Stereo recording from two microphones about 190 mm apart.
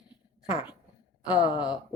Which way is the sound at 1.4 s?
25° left (ahead or behind).